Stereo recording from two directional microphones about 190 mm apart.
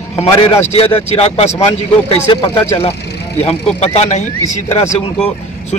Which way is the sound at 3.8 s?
35° left (ahead or behind).